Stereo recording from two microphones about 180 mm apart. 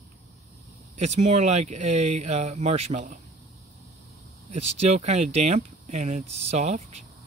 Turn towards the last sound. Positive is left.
turn(degrees=-40)  # may be behind; listen again after turning